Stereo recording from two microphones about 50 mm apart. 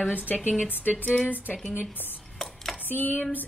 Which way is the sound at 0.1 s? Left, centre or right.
Left.